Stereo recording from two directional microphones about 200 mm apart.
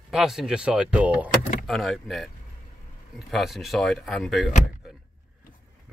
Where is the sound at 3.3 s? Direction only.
Centre (ahead or behind).